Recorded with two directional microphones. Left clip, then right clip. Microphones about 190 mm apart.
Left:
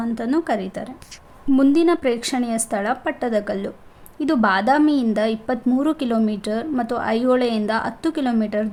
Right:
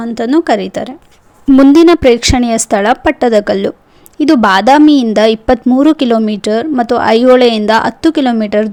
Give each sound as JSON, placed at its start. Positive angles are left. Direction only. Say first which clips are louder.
{"t": 0.0, "sound": "a woman's voice", "louder": "right 10 dB", "side_deg": -40}